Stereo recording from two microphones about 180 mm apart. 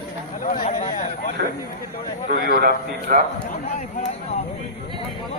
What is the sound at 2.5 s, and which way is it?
Speech, 55° right (ahead or behind).